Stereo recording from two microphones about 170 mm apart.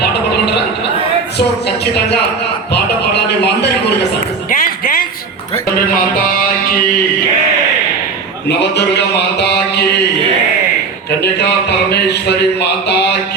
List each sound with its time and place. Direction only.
1.4 s speech: 75° left (ahead or behind)
4.4 s a sound: 55° left (ahead or behind)
8.4 s mantra: 80° left
11.2 s speech: 80° left